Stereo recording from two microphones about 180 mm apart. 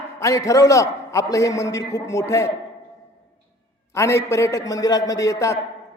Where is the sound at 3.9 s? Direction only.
15° left (ahead or behind).